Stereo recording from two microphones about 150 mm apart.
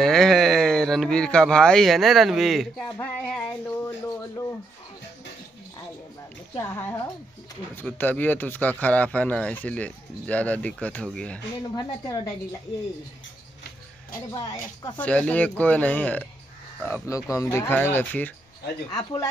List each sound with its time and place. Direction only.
0.0 s speech: centre (ahead or behind)
2.8 s music: 15° left (ahead or behind)
6.5 s speech: 15° left (ahead or behind)
11.7 s speech: 25° left (ahead or behind)
14.3 s speech: 25° left (ahead or behind)
15.0 s speech: 10° left (ahead or behind)
18.9 s speech: 25° left (ahead or behind)